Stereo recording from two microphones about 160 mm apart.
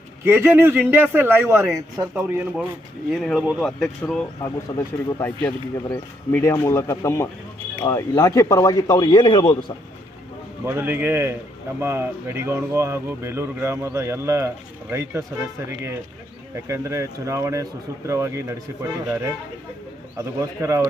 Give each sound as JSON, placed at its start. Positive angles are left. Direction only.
{"t": 0.3, "sound": "speech", "side_deg": -15}
{"t": 4.7, "sound": "speech", "side_deg": 25}
{"t": 10.7, "sound": "speech", "side_deg": -15}
{"t": 16.6, "sound": "speech", "side_deg": -20}